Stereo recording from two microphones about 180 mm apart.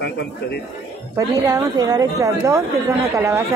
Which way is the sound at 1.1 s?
20° right (ahead or behind).